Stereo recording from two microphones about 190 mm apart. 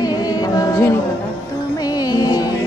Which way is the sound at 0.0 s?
20° left (ahead or behind).